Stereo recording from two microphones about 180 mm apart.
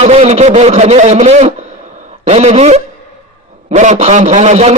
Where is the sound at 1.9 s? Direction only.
40° right (ahead or behind).